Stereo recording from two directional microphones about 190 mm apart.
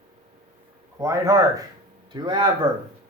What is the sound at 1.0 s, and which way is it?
A man's voice, 15° right (ahead or behind).